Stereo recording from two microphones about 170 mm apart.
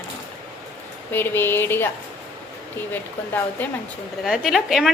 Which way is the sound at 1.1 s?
15° left (ahead or behind).